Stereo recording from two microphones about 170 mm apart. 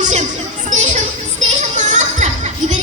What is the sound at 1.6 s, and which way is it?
Children playing, 45° right (ahead or behind).